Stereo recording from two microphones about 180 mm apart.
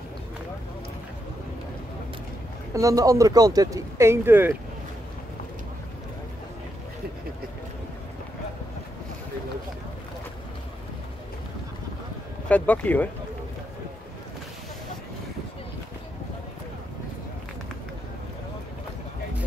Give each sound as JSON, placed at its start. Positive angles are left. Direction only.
{"t": 2.7, "sound": "speech", "side_deg": -20}
{"t": 12.4, "sound": "speech", "side_deg": 10}